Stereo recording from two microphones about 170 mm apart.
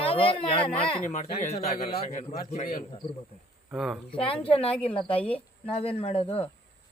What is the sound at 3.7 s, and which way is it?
Speech, centre (ahead or behind).